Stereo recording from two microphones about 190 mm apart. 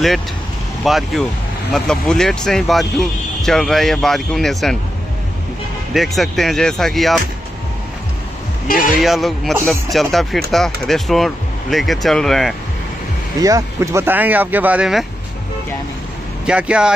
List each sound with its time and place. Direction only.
0.8 s speech: centre (ahead or behind)
5.9 s speech: centre (ahead or behind)
8.6 s speech: 50° left (ahead or behind)
8.9 s speech: centre (ahead or behind)
13.4 s speech: 20° right (ahead or behind)
16.4 s speech: 5° right (ahead or behind)